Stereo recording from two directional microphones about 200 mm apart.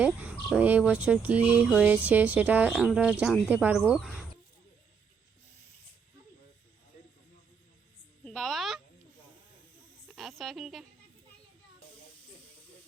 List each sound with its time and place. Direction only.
0.0 s speech: 5° right (ahead or behind)
8.2 s a sound: 5° left (ahead or behind)
10.2 s a woman's voice: centre (ahead or behind)